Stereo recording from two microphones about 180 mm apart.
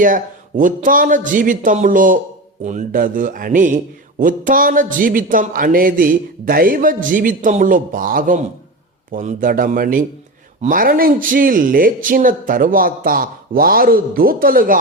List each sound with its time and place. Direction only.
0.0 s speech: 50° right (ahead or behind)